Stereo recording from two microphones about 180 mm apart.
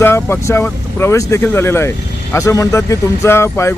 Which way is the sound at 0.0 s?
15° left (ahead or behind).